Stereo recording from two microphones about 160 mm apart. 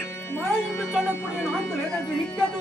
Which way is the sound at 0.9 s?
10° right (ahead or behind).